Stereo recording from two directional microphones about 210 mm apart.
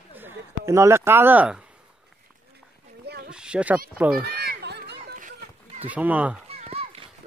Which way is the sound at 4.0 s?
5° right (ahead or behind).